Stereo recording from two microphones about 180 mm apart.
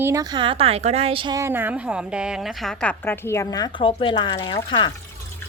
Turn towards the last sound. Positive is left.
turn(degrees=25)  # may be behind; listen again after turning